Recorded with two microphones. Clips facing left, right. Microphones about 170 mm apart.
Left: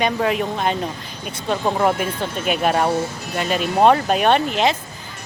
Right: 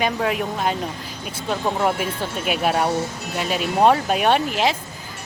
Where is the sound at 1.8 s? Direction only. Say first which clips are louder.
Left 2 dB; centre (ahead or behind).